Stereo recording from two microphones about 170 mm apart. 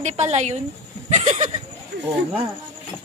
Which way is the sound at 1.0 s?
40° right (ahead or behind).